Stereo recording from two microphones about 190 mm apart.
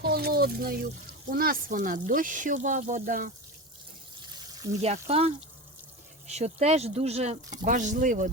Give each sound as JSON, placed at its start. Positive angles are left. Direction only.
{"t": 0.0, "sound": "speech", "side_deg": -55}
{"t": 4.8, "sound": "speech", "side_deg": -35}